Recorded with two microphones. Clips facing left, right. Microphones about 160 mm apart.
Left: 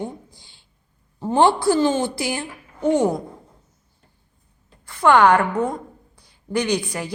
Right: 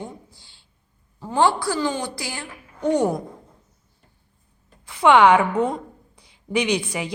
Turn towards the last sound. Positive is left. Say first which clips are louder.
# even
turn(degrees=-10)  # may be behind; listen again after turning